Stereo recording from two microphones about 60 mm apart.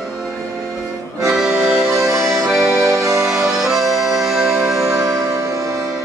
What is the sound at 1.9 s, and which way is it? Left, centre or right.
Music, right.